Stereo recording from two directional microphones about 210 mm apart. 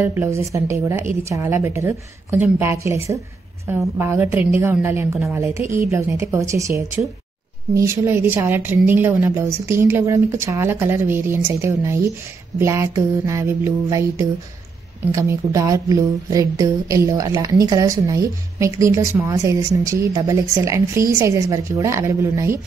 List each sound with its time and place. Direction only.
0.0 s a woman's voice: 10° right (ahead or behind)